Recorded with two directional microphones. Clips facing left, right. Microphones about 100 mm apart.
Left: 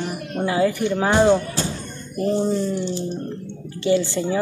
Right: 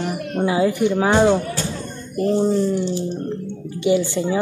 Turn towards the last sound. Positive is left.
turn(degrees=-15)  # may be behind; listen again after turning